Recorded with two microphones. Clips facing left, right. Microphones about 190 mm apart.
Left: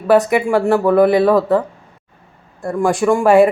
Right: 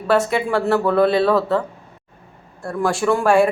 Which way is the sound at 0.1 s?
15° left (ahead or behind).